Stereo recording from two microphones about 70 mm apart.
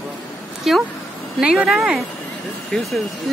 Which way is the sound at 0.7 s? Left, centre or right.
Centre.